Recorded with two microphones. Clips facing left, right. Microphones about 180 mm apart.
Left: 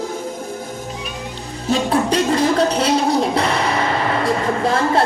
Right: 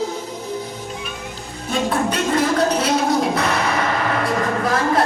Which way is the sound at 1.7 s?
30° left (ahead or behind).